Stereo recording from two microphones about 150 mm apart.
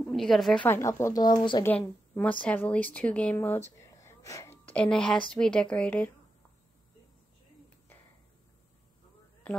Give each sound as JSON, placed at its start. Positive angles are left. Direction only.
{"t": 0.0, "sound": "a woman's voice", "side_deg": 0}
{"t": 0.7, "sound": "speech", "side_deg": 20}
{"t": 1.6, "sound": "a woman's voice", "side_deg": 10}
{"t": 4.0, "sound": "sneeze", "side_deg": 20}
{"t": 4.7, "sound": "a woman's voice", "side_deg": 5}